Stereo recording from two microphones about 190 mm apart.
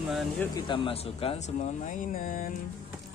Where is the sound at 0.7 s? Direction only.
30° left (ahead or behind); by 2.5 s 50° left (ahead or behind).